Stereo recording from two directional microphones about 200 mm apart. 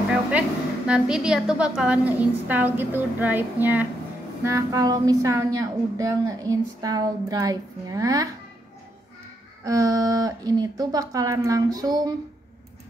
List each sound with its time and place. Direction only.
0.1 s a woman's voice: 5° right (ahead or behind)
9.7 s a woman's voice: 15° right (ahead or behind)